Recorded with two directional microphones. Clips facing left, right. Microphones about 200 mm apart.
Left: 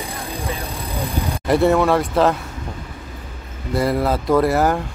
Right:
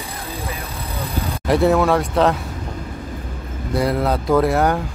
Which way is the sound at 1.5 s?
Centre (ahead or behind).